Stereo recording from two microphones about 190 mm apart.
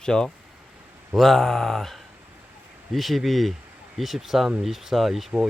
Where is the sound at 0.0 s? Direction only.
5° left (ahead or behind).